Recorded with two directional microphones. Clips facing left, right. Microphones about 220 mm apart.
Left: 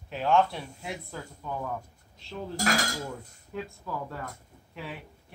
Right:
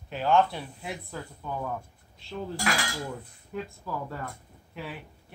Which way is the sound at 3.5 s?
Centre (ahead or behind).